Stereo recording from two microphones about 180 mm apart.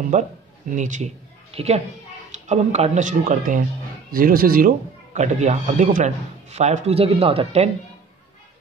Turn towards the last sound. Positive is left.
turn(degrees=-35)  # may be behind; listen again after turning